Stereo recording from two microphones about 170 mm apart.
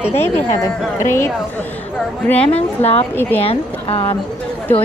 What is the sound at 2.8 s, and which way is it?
Speech, 35° left (ahead or behind).